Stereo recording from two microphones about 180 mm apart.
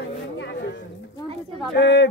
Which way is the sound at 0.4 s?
75° left (ahead or behind).